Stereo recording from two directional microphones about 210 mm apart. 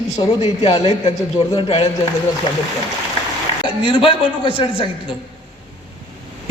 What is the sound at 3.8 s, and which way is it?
A man's voice, 25° left (ahead or behind).